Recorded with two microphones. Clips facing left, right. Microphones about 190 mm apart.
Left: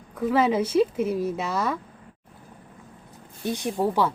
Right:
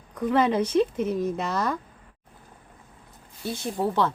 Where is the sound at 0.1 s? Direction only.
5° left (ahead or behind).